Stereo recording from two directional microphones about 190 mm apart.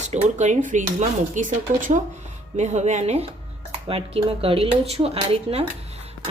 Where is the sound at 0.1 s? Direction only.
40° right (ahead or behind).